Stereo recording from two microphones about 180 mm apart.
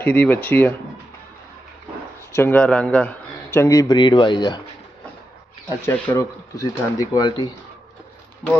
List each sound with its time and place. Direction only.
0.0 s speech: 10° left (ahead or behind)
2.3 s speech: 10° left (ahead or behind)
5.6 s speech: 15° left (ahead or behind)